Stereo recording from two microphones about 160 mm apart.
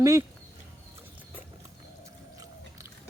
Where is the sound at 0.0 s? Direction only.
20° right (ahead or behind).